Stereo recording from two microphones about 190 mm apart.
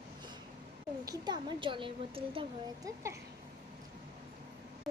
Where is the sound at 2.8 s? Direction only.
15° right (ahead or behind).